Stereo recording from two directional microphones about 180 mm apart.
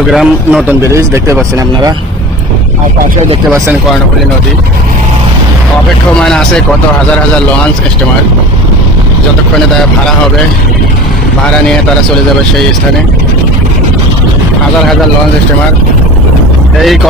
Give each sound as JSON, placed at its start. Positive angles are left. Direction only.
{"t": 0.1, "sound": "a man's voice", "side_deg": 0}
{"t": 0.9, "sound": "speech", "side_deg": -15}
{"t": 6.1, "sound": "a man's voice", "side_deg": 5}